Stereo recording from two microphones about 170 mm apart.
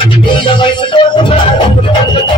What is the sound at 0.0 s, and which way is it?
Music, 30° left (ahead or behind).